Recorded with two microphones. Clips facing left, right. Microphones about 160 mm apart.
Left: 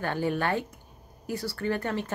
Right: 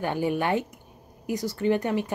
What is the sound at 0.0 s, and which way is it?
Speech, 15° right (ahead or behind).